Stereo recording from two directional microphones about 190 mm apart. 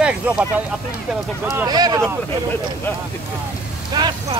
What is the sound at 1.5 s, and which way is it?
Speech, 20° right (ahead or behind).